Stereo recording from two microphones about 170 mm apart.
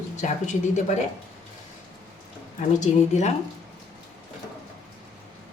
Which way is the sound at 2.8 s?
45° left (ahead or behind).